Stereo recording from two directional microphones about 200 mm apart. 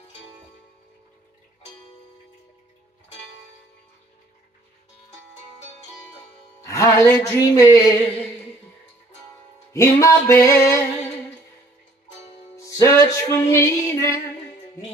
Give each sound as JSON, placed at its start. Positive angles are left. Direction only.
{"t": 6.6, "sound": "music", "side_deg": 15}
{"t": 9.7, "sound": "music", "side_deg": 15}
{"t": 12.5, "sound": "music", "side_deg": 15}